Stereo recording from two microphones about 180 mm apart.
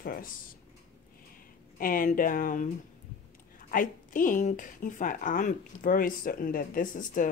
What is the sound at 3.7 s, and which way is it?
A woman's voice, 50° left (ahead or behind).